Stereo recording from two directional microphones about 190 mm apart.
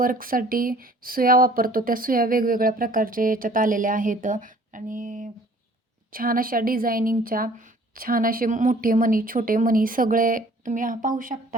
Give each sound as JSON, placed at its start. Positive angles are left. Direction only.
{"t": 0.0, "sound": "speech", "side_deg": -50}